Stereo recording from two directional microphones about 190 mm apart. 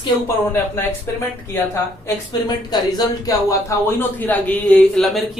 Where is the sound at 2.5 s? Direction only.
20° left (ahead or behind).